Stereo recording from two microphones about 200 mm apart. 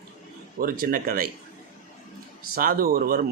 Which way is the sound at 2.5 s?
45° right (ahead or behind).